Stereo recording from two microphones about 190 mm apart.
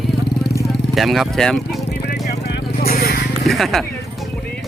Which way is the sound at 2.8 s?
50° left (ahead or behind).